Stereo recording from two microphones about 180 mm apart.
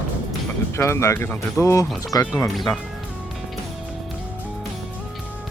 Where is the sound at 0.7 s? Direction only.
15° left (ahead or behind).